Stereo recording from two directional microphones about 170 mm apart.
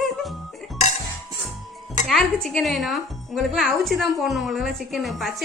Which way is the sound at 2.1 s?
5° left (ahead or behind).